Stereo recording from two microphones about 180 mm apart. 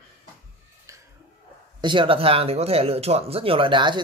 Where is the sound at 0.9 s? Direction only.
15° right (ahead or behind).